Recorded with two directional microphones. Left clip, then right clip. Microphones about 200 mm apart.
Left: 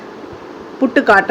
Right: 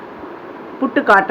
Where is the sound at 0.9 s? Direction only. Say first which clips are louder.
Left 1 dB; 15° left (ahead or behind).